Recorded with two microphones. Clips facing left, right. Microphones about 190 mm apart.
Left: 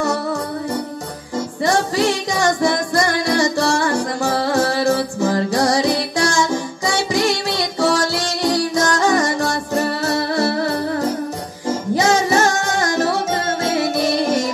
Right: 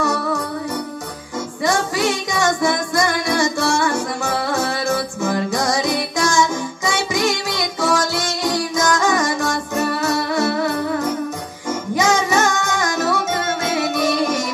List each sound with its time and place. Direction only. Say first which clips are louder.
1.6 s music: left 2 dB; 35° left (ahead or behind)